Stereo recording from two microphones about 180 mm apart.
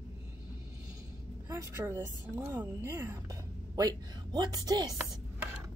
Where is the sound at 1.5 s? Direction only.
15° right (ahead or behind).